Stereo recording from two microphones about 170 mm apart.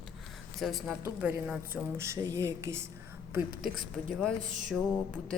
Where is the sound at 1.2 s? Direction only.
10° right (ahead or behind).